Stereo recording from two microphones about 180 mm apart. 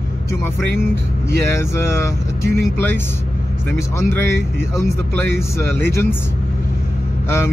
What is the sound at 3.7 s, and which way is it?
Speech, 15° left (ahead or behind).